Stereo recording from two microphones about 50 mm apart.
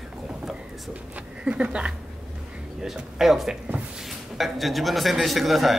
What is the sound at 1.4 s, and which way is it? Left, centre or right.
Speech, right.